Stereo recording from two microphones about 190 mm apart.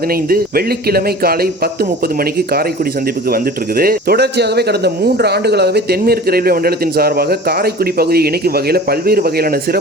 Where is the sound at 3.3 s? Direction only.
50° right (ahead or behind).